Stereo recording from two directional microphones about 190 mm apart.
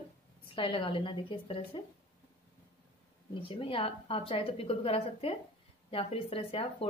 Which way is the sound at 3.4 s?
25° left (ahead or behind).